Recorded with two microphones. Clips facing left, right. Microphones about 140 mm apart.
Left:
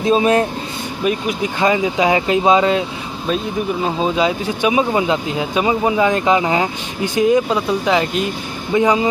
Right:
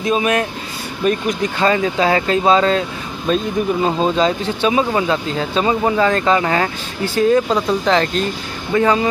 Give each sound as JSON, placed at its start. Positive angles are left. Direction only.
{"t": 0.0, "sound": "speech", "side_deg": 30}
{"t": 1.0, "sound": "speech", "side_deg": 10}
{"t": 3.8, "sound": "speech", "side_deg": 5}